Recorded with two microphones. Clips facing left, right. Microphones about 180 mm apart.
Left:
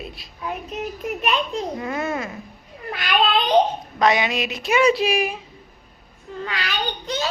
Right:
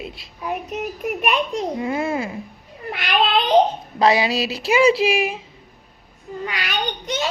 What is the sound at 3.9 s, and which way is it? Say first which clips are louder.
A woman's voice: right 2 dB; 30° right (ahead or behind).